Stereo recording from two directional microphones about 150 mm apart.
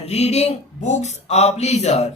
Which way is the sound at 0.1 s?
45° left (ahead or behind).